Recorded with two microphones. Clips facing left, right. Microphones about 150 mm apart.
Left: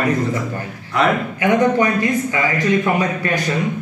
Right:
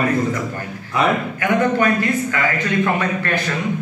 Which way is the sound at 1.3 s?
20° left (ahead or behind).